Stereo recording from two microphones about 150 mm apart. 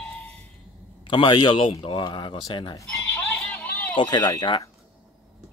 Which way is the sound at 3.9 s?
30° left (ahead or behind).